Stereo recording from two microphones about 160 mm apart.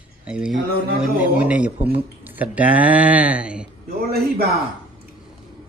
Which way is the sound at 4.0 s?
75° right (ahead or behind).